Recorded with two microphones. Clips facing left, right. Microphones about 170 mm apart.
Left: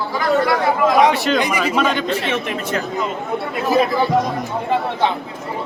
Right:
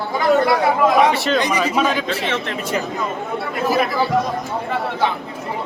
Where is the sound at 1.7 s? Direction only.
5° right (ahead or behind).